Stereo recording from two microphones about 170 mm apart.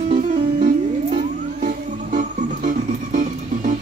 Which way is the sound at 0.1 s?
45° right (ahead or behind).